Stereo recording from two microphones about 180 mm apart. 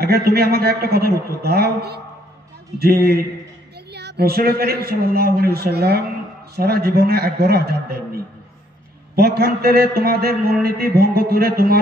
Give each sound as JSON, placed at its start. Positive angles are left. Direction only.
{"t": 0.0, "sound": "a man's voice", "side_deg": -60}